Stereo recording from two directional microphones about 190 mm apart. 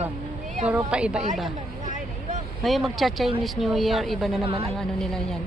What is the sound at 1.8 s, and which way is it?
Vehicle, 40° right (ahead or behind).